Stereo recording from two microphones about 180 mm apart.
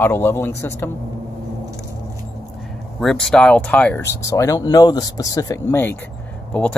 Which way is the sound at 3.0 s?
Centre (ahead or behind).